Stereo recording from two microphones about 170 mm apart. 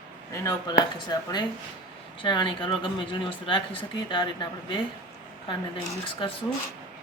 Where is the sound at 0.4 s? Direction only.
25° left (ahead or behind).